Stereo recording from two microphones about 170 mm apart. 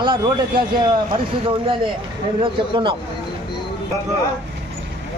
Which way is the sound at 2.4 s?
30° right (ahead or behind).